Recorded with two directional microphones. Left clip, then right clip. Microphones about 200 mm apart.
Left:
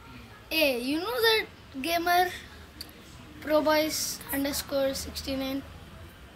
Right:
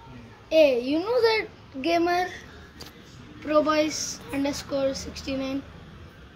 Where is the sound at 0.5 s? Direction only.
40° left (ahead or behind).